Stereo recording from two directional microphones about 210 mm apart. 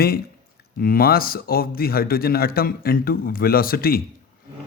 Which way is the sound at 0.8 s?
45° left (ahead or behind).